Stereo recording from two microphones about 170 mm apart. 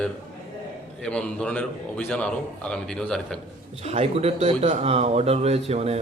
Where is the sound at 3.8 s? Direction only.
40° right (ahead or behind).